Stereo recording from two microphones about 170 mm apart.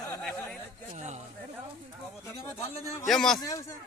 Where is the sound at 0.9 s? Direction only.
45° right (ahead or behind).